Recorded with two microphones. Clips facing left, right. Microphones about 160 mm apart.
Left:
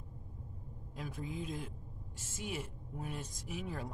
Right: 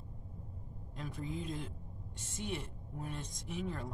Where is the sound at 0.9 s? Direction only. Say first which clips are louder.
Right 1 dB; centre (ahead or behind).